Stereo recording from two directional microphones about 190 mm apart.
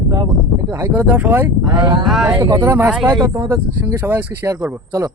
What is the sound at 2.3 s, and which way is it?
Speech, 20° right (ahead or behind).